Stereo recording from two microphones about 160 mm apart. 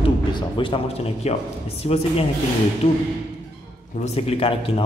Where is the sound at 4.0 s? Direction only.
40° left (ahead or behind).